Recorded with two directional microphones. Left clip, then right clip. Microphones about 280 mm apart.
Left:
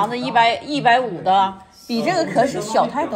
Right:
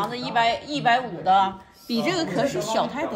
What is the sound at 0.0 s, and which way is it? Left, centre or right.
Speech, centre.